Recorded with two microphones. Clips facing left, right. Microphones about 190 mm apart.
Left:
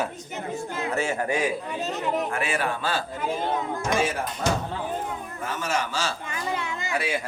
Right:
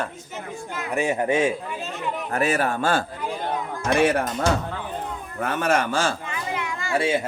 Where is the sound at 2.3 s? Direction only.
40° right (ahead or behind).